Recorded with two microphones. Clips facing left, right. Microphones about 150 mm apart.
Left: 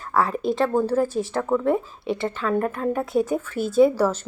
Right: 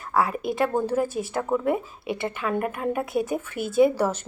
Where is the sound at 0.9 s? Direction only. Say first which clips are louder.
Left 3 dB; 40° left (ahead or behind).